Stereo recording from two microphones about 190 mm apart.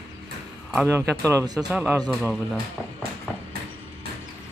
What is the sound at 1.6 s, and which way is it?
Speech, 5° right (ahead or behind).